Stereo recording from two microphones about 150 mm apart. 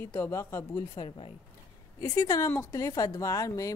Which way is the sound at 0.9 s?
35° left (ahead or behind).